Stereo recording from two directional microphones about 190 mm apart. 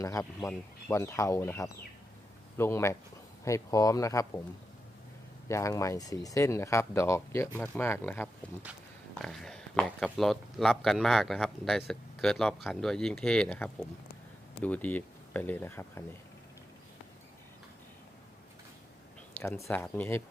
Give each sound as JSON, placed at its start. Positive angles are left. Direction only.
{"t": 0.0, "sound": "speech", "side_deg": 15}
{"t": 5.5, "sound": "speech", "side_deg": 15}
{"t": 19.6, "sound": "speech", "side_deg": 10}